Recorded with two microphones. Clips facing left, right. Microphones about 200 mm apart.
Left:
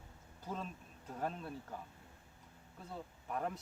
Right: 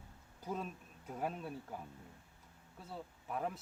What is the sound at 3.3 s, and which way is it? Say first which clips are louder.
Speech: even; 5° right (ahead or behind).